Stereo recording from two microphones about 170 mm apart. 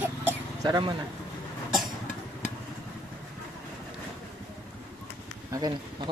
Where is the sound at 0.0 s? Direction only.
10° right (ahead or behind).